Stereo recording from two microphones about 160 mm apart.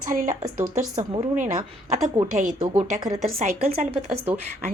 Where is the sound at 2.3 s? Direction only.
55° right (ahead or behind).